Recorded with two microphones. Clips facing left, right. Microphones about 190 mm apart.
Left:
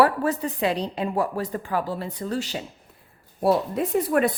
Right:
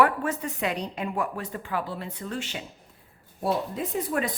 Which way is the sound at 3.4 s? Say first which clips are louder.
Left 6 dB; 65° left (ahead or behind).